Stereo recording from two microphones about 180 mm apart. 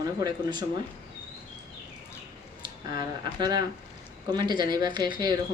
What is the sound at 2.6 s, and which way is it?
Speech, 25° right (ahead or behind).